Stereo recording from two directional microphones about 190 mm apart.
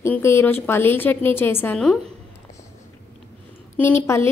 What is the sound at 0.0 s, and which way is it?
A woman's voice, 15° left (ahead or behind).